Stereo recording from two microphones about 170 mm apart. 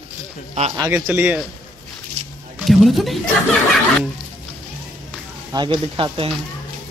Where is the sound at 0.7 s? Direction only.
15° right (ahead or behind).